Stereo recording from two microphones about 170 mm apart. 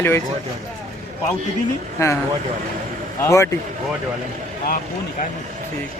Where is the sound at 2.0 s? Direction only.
15° left (ahead or behind).